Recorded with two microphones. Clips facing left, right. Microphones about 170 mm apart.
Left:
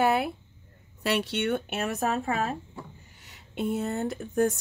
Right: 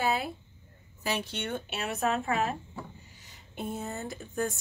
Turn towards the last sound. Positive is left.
turn(degrees=60)  # may be behind; listen again after turning